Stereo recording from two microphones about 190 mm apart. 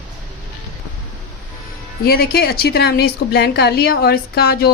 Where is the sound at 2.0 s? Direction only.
55° left (ahead or behind).